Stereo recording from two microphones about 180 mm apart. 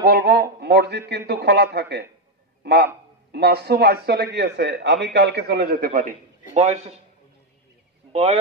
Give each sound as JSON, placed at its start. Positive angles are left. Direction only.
{"t": 0.0, "sound": "speech", "side_deg": -60}
{"t": 6.5, "sound": "a man's voice", "side_deg": -35}
{"t": 8.1, "sound": "speech", "side_deg": -35}